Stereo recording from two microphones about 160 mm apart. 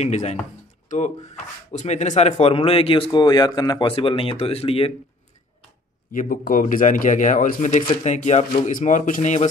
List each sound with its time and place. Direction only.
0.0 s speech: 45° left (ahead or behind)
6.1 s a man's voice: 60° left (ahead or behind)